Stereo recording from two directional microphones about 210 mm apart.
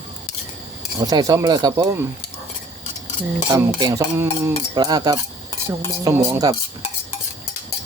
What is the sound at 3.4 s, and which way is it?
Speech, 15° right (ahead or behind).